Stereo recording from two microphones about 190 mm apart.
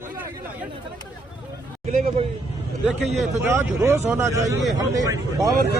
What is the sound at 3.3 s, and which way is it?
Speech, 10° right (ahead or behind).